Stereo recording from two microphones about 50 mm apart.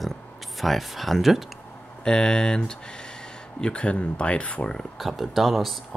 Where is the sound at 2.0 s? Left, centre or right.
Centre.